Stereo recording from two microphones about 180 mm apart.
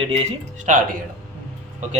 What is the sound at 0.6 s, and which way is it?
Speech, 50° right (ahead or behind).